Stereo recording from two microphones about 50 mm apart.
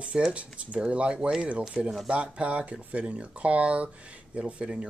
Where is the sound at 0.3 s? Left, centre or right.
Right.